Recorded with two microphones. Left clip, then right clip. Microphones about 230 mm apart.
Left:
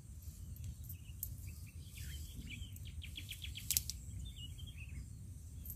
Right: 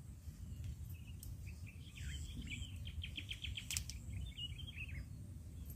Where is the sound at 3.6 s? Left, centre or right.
Centre.